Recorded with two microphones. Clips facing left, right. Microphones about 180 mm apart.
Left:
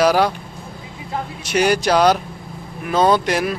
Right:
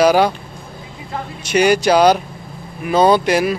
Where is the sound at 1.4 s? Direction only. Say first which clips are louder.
Right 4 dB; centre (ahead or behind).